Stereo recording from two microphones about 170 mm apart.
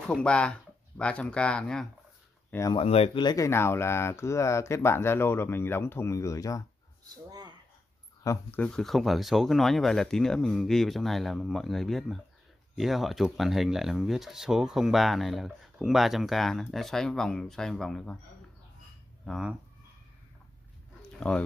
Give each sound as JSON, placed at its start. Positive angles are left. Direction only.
{"t": 0.1, "sound": "speech", "side_deg": 5}
{"t": 2.7, "sound": "speech", "side_deg": 35}
{"t": 7.2, "sound": "a sound", "side_deg": -25}
{"t": 8.2, "sound": "speech", "side_deg": 15}
{"t": 19.2, "sound": "speech", "side_deg": 0}
{"t": 21.0, "sound": "a sound", "side_deg": 5}